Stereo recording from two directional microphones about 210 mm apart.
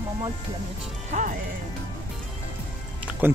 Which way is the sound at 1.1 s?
35° right (ahead or behind).